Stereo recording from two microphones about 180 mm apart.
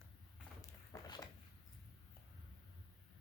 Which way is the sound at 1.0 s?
20° left (ahead or behind).